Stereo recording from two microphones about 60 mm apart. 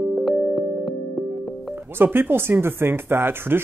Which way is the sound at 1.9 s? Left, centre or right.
Right.